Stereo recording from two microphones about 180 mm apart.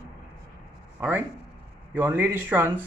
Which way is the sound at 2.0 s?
10° right (ahead or behind).